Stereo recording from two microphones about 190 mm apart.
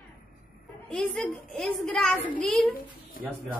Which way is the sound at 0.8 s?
5° left (ahead or behind).